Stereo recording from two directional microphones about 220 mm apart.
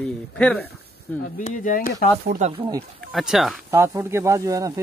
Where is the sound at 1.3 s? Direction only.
35° left (ahead or behind).